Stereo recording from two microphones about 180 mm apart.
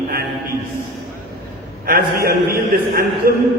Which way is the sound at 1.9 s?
55° right (ahead or behind).